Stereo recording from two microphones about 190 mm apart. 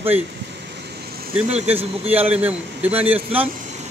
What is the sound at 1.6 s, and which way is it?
Speech, 30° right (ahead or behind).